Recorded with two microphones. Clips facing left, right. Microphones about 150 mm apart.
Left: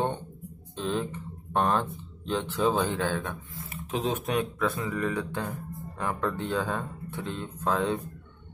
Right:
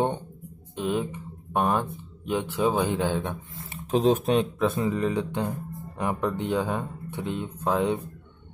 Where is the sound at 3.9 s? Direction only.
35° right (ahead or behind); by 7.9 s 15° right (ahead or behind).